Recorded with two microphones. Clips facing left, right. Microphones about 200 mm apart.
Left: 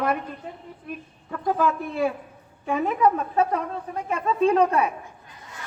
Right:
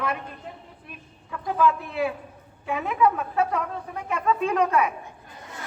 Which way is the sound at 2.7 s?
40° left (ahead or behind).